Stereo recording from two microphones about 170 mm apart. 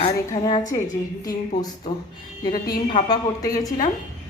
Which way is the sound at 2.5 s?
25° left (ahead or behind).